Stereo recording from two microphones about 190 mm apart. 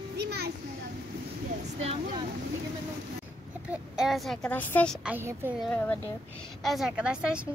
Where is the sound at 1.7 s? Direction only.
30° right (ahead or behind).